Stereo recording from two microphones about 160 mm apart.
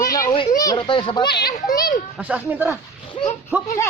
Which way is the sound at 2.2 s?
10° right (ahead or behind).